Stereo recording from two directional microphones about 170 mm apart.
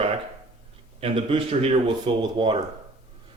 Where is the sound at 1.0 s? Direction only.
35° right (ahead or behind).